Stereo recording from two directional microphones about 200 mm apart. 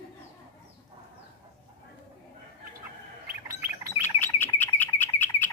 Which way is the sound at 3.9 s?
10° left (ahead or behind).